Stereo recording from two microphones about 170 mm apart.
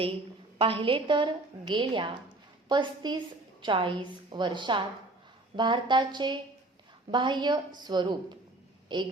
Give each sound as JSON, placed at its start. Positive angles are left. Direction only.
{"t": 0.6, "sound": "a woman's voice", "side_deg": -30}